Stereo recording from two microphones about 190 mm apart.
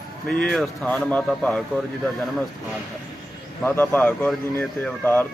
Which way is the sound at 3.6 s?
10° left (ahead or behind).